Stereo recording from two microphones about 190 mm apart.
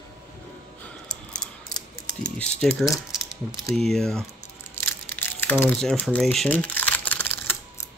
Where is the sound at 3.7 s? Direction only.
Centre (ahead or behind).